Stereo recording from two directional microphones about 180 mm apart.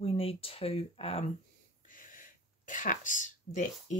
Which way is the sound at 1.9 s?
50° left (ahead or behind).